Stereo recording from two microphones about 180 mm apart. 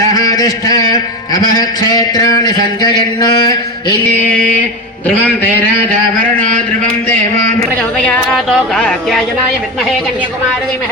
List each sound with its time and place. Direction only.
0.1 s a sound: 20° left (ahead or behind)
1.3 s a man's voice: 20° left (ahead or behind)
5.0 s a man's voice: 10° left (ahead or behind)
7.6 s speech: 5° left (ahead or behind)